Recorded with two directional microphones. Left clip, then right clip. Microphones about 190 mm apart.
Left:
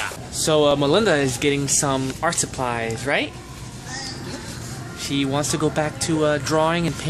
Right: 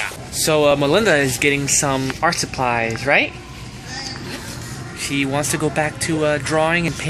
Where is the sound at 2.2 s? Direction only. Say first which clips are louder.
Right 4 dB; 25° right (ahead or behind).